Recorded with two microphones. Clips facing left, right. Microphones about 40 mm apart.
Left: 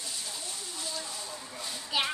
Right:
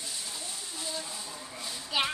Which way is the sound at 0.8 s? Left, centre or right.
Centre.